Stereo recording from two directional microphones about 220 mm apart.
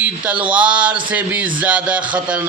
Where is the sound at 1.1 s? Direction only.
5° right (ahead or behind).